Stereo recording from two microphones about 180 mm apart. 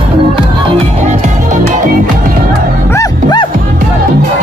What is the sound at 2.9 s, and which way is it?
Music, 20° left (ahead or behind).